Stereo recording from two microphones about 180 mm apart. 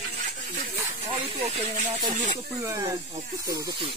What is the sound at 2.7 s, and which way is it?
Speech, 20° right (ahead or behind).